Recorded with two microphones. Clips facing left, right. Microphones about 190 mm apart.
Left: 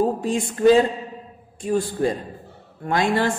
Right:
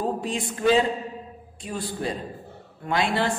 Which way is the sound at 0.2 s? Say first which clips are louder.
Left 7 dB; 45° left (ahead or behind).